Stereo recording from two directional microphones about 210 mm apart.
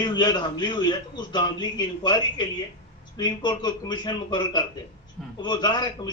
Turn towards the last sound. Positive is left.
turn(degrees=20)  # may be behind; listen again after turning